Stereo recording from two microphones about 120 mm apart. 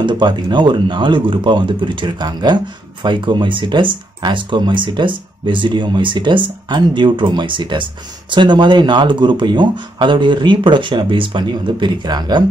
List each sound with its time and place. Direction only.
0.0 s speech: 40° right (ahead or behind)